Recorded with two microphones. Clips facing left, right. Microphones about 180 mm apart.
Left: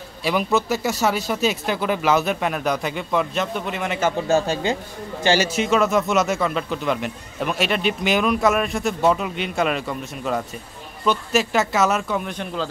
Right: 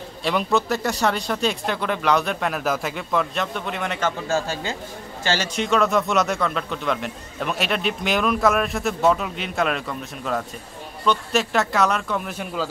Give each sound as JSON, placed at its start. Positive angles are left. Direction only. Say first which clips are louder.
{"t": 0.2, "sound": "speech", "louder": "left 1 dB", "side_deg": 5}
{"t": 4.3, "sound": "a man's voice", "louder": "left 5 dB", "side_deg": 20}
{"t": 5.5, "sound": "speech", "louder": "left 1 dB", "side_deg": 5}